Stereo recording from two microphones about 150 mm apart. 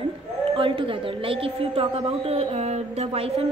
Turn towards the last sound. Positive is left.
turn(degrees=-40)  # may be behind; listen again after turning